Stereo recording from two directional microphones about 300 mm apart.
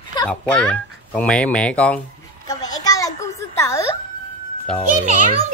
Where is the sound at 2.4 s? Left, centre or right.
Centre.